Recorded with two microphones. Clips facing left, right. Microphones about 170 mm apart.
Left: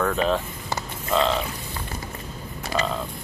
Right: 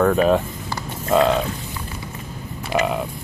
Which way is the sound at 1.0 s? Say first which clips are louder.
Right 6 dB; 50° right (ahead or behind).